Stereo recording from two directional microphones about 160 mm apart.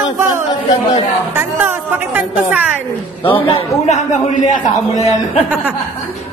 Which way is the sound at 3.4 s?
35° left (ahead or behind).